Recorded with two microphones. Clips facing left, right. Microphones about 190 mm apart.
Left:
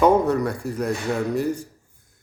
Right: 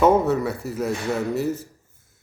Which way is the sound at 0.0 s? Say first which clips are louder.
Even; 5° right (ahead or behind).